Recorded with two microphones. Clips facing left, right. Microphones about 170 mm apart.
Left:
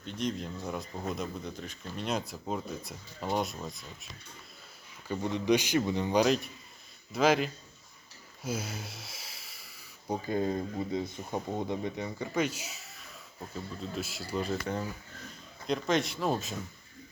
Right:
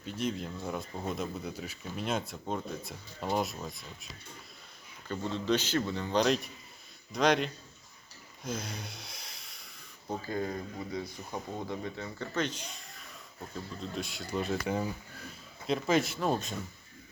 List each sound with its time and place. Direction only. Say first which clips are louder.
0.0 s speech: even; 5° right (ahead or behind)
5.0 s speech: left 3 dB; 15° left (ahead or behind)
6.2 s speech: left 1 dB; centre (ahead or behind)
8.4 s a sound: left 2 dB; 5° left (ahead or behind)
10.1 s speech: left 4 dB; 20° left (ahead or behind); by 16.6 s centre (ahead or behind)